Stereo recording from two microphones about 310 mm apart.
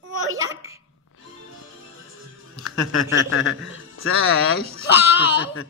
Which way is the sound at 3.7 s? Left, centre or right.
Left.